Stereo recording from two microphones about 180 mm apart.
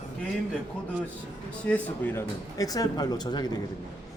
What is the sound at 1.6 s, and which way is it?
Speech, 10° left (ahead or behind).